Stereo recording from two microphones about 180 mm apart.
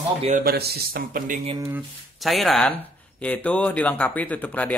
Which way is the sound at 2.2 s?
Centre (ahead or behind).